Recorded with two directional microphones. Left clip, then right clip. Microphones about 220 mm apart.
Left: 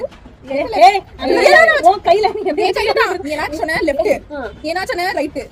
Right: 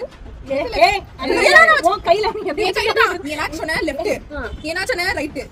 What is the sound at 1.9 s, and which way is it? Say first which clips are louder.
Speech: left 4 dB; 20° right (ahead or behind).